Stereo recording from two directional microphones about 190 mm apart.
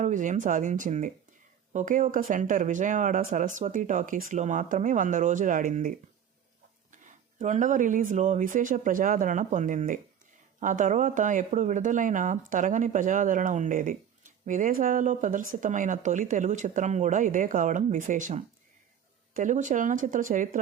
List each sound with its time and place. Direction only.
0.0 s speech: 40° right (ahead or behind)
6.9 s speech: 40° right (ahead or behind)